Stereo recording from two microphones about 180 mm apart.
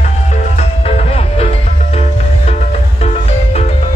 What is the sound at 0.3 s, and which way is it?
Music, 40° left (ahead or behind).